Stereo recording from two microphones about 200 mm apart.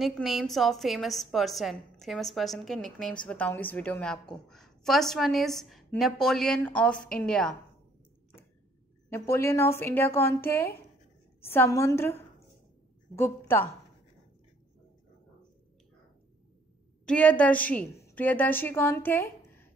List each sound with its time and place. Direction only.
0.0 s a woman's voice: centre (ahead or behind)
9.1 s a woman's voice: 15° left (ahead or behind)
17.0 s a woman's voice: 5° left (ahead or behind)